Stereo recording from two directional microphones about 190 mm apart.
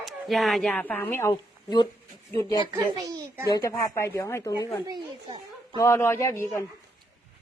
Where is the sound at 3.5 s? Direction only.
15° left (ahead or behind).